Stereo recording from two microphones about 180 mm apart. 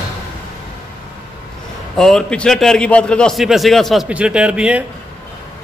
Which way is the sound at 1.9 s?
5° left (ahead or behind).